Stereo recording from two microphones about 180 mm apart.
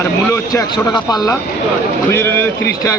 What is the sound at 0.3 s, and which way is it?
Speech, 15° left (ahead or behind).